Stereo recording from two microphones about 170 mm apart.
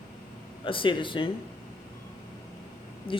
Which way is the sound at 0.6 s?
30° left (ahead or behind).